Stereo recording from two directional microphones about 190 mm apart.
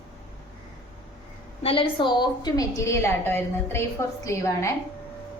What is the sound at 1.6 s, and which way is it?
A woman's voice, 30° left (ahead or behind).